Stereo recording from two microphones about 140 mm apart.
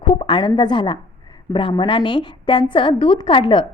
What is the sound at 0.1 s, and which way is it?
A woman's voice, 35° left (ahead or behind).